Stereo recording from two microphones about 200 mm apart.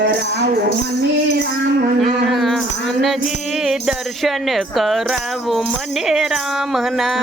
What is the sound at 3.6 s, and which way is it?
Speech, centre (ahead or behind).